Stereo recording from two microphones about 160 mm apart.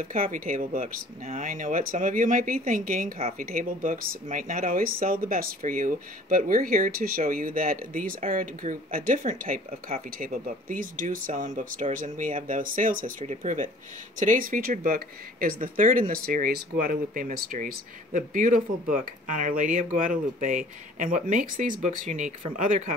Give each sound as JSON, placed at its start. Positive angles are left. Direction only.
{"t": 0.0, "sound": "speech", "side_deg": -60}